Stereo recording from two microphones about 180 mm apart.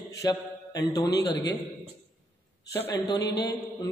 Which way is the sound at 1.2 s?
70° left (ahead or behind).